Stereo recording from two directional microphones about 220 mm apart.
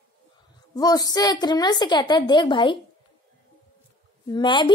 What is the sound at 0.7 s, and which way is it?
Speech, 15° left (ahead or behind).